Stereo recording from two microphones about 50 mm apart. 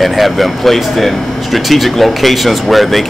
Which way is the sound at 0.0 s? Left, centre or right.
Centre.